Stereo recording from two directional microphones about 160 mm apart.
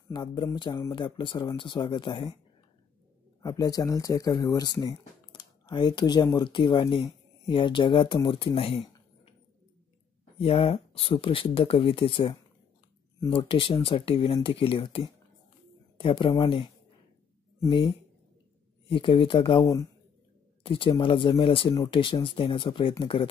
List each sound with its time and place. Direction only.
0.1 s speech: 25° left (ahead or behind)
3.4 s speech: 20° left (ahead or behind)
8.5 s a sound: 35° left (ahead or behind)
10.4 s speech: 35° left (ahead or behind)
20.6 s speech: 35° left (ahead or behind)